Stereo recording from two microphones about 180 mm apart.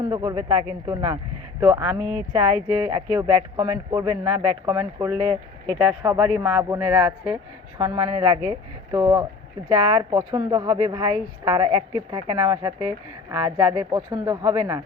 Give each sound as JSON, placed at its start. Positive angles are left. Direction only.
{"t": 0.0, "sound": "a woman's voice", "side_deg": -20}